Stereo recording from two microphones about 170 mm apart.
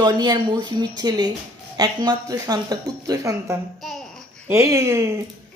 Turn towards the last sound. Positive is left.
turn(degrees=-15)  # may be behind; listen again after turning